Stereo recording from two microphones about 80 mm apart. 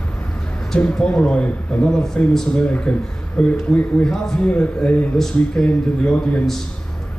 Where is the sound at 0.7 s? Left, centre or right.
Centre.